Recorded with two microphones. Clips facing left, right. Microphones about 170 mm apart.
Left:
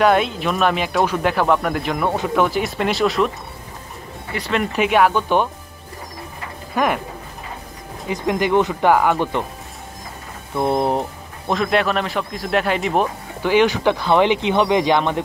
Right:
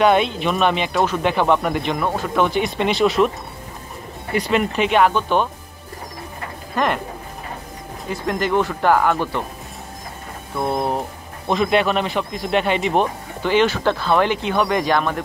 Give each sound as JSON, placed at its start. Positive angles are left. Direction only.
{"t": 0.0, "sound": "speech", "side_deg": 0}
{"t": 2.0, "sound": "speech", "side_deg": 10}
{"t": 4.7, "sound": "speech", "side_deg": 10}
{"t": 6.7, "sound": "speech", "side_deg": 5}
{"t": 8.1, "sound": "speech", "side_deg": 15}
{"t": 10.6, "sound": "speech", "side_deg": 25}
{"t": 11.4, "sound": "speech", "side_deg": 0}